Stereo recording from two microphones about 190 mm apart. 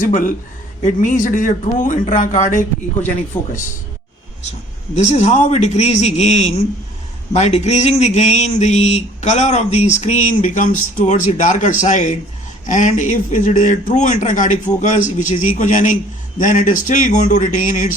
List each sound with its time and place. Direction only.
0.0 s a man's voice: 45° left (ahead or behind)
4.9 s speech: 40° left (ahead or behind)